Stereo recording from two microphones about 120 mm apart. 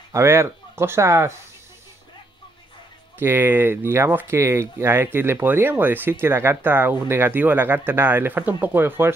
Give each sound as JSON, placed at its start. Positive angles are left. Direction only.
{"t": 0.1, "sound": "speech", "side_deg": -25}
{"t": 3.2, "sound": "speech", "side_deg": -20}